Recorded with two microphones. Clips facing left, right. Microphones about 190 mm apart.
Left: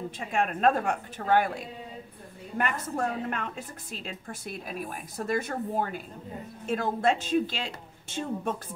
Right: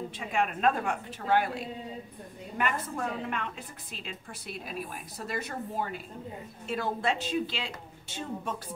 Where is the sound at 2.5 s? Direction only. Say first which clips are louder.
Left 2 dB; 45° left (ahead or behind).